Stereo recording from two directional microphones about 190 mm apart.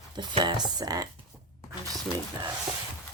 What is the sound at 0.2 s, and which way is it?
Speech, 20° right (ahead or behind).